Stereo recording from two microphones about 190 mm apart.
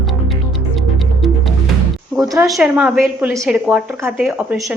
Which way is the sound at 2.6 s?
5° right (ahead or behind).